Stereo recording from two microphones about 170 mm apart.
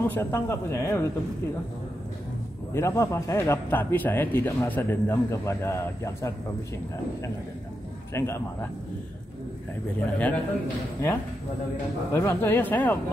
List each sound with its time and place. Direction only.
0.1 s speech: 15° left (ahead or behind)
2.7 s speech: 15° left (ahead or behind)
8.1 s speech: 15° left (ahead or behind)
9.9 s speech: 10° left (ahead or behind)
12.1 s speech: 15° left (ahead or behind)